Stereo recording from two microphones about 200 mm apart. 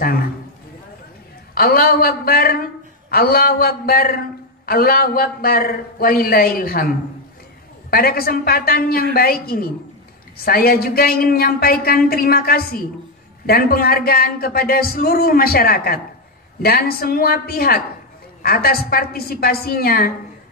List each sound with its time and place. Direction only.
1.5 s speech: 50° left (ahead or behind)